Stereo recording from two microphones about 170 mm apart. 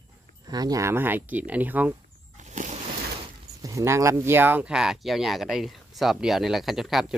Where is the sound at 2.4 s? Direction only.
45° right (ahead or behind).